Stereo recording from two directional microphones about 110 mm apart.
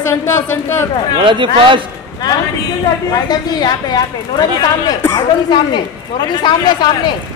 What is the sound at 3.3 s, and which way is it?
A woman's voice, 40° left (ahead or behind).